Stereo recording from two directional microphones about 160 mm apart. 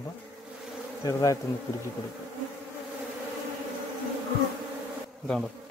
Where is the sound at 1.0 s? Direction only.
20° left (ahead or behind).